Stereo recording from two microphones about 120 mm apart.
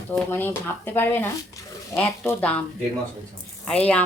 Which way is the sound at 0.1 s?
20° left (ahead or behind).